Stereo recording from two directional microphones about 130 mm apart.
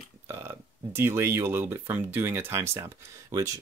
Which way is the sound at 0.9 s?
20° right (ahead or behind).